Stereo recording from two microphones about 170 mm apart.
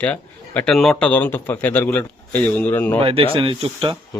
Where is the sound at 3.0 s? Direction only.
35° right (ahead or behind).